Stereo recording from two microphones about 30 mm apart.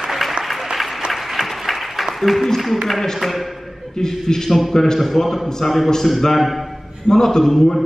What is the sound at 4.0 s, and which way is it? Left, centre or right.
Speech, centre.